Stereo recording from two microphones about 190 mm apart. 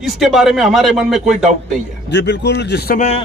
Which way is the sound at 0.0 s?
Centre (ahead or behind).